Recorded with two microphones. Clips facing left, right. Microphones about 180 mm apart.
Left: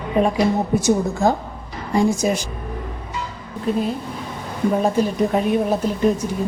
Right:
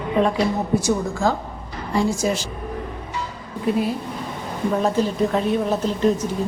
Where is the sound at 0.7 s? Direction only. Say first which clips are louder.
Left 2 dB; 20° left (ahead or behind).